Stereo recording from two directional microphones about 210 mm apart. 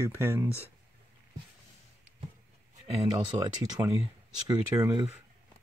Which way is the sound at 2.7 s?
25° right (ahead or behind).